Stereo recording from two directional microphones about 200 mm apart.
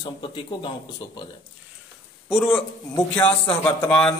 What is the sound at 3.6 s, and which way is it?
Speech, 5° left (ahead or behind).